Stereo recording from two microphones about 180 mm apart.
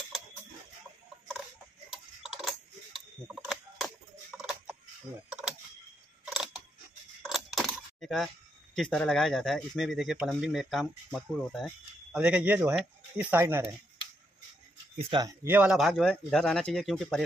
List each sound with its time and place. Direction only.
1.9 s tick-tock: 5° right (ahead or behind)
3.4 s a sound: centre (ahead or behind)
7.2 s coin: centre (ahead or behind)
8.7 s speech: 5° left (ahead or behind); by 13.7 s 15° right (ahead or behind)
15.0 s speech: 25° right (ahead or behind)
15.4 s speech: 10° right (ahead or behind)